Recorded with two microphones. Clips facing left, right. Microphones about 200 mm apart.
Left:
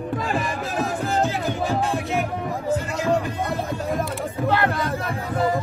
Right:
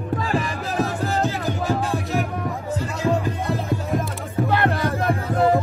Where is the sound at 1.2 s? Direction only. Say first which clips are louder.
Right 1 dB; 40° right (ahead or behind).